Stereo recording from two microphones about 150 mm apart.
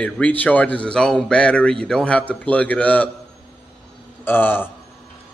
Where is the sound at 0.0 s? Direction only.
10° left (ahead or behind).